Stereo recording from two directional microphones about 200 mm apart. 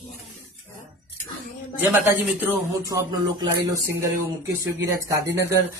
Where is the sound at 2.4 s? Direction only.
10° right (ahead or behind).